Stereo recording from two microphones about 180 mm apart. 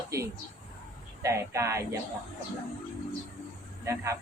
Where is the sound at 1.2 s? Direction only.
15° right (ahead or behind).